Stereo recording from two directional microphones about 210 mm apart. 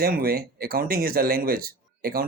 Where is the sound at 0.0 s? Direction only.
45° right (ahead or behind).